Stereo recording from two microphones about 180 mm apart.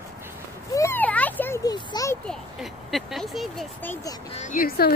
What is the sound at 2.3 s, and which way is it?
Speech, centre (ahead or behind).